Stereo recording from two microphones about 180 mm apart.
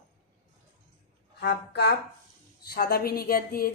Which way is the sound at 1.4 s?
70° left (ahead or behind).